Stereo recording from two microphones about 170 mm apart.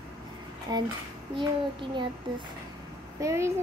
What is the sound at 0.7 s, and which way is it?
Speech, 25° right (ahead or behind).